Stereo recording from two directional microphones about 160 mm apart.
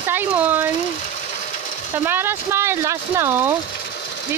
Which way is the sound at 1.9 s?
15° right (ahead or behind).